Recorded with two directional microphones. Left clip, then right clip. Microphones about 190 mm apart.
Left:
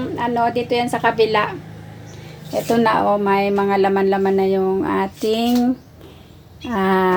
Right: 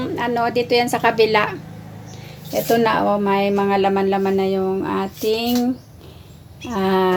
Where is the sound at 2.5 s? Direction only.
20° left (ahead or behind); by 5.5 s 40° left (ahead or behind).